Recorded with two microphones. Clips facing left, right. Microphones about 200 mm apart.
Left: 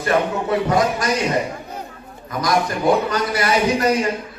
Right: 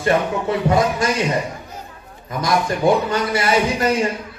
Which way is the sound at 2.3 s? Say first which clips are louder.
Even; 25° right (ahead or behind).